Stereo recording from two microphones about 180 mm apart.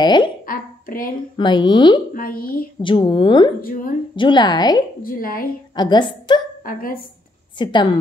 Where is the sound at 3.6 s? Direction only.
50° left (ahead or behind).